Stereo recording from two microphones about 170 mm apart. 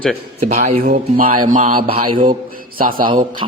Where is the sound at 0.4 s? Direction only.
45° right (ahead or behind).